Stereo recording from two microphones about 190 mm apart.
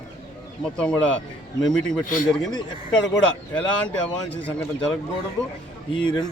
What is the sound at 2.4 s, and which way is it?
Speech, 20° left (ahead or behind).